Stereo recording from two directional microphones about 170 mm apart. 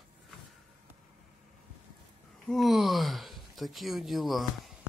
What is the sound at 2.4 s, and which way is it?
Speech, centre (ahead or behind).